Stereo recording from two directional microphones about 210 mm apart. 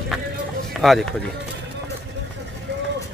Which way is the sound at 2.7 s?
55° right (ahead or behind).